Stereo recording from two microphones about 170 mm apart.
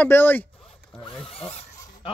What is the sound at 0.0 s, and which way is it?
Speech, 10° left (ahead or behind).